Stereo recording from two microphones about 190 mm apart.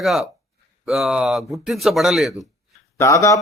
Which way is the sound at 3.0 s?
15° left (ahead or behind).